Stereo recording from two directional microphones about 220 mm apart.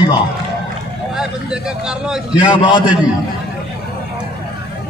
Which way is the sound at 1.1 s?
5° right (ahead or behind).